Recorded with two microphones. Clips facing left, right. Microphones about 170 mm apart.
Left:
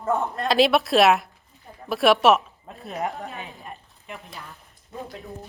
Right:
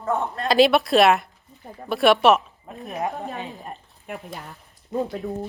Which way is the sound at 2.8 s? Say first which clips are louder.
Right 1 dB; 20° right (ahead or behind).